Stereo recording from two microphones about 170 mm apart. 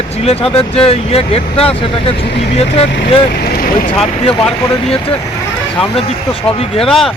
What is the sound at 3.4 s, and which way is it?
Speech, 60° left (ahead or behind).